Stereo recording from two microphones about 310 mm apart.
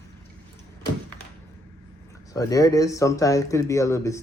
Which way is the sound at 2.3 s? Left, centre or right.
Centre.